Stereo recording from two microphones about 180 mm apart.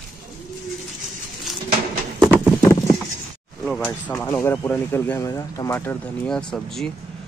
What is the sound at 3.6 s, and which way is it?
Speech, 5° left (ahead or behind).